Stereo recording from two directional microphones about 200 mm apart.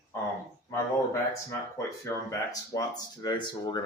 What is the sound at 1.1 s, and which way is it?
Speech, 15° left (ahead or behind).